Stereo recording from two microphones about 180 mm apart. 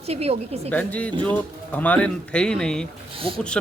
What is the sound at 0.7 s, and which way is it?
A man's voice, 10° left (ahead or behind).